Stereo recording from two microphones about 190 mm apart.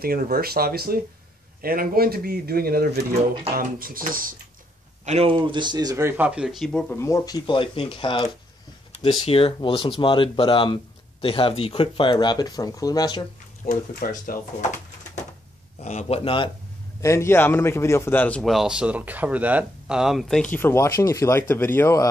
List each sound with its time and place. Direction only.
0.0 s speech: 50° right (ahead or behind)
5.0 s speech: 35° right (ahead or behind); by 13.3 s 20° left (ahead or behind)
13.7 s speech: 45° left (ahead or behind)
15.8 s a man's voice: 35° left (ahead or behind)
17.0 s a man's voice: 15° left (ahead or behind)